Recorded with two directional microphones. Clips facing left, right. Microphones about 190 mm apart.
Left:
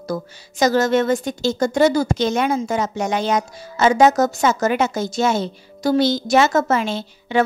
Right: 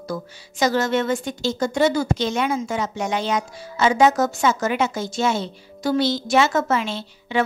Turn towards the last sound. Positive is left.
turn(degrees=45)  # may be behind; listen again after turning